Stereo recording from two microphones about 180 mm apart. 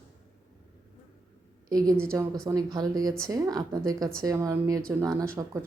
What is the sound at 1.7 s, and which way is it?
A woman's voice, 20° right (ahead or behind).